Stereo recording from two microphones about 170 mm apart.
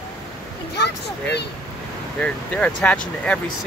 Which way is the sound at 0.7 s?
80° left.